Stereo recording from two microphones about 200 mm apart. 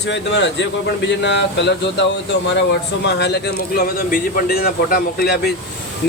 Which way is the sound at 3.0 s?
60° left (ahead or behind).